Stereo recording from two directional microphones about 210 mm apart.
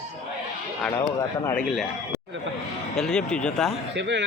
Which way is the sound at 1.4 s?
5° left (ahead or behind).